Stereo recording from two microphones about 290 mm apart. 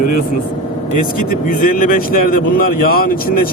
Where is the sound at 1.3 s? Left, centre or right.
Left.